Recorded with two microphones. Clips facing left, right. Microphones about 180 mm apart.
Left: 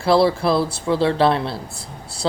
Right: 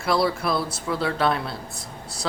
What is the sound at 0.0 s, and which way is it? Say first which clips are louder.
Speech: left 7 dB; 30° left (ahead or behind).